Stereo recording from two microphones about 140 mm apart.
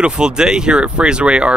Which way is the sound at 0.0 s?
5° right (ahead or behind).